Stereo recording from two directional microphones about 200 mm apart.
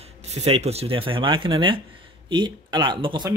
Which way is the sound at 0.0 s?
30° right (ahead or behind).